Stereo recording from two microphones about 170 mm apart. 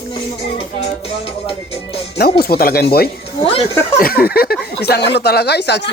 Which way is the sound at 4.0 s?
60° left (ahead or behind).